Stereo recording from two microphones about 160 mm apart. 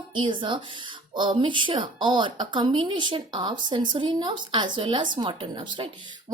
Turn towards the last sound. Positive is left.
turn(degrees=-30)  # may be behind; listen again after turning